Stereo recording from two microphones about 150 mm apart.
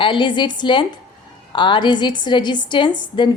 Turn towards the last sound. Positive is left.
turn(degrees=30)  # may be behind; listen again after turning